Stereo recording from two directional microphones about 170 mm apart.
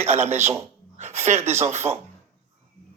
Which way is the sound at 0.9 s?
40° right (ahead or behind).